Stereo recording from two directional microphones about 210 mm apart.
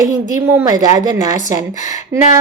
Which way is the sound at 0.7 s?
15° right (ahead or behind).